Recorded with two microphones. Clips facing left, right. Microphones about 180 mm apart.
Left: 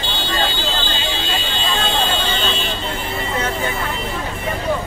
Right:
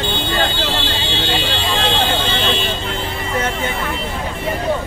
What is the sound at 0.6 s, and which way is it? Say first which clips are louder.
Vehicle: right 2 dB; 70° right (ahead or behind).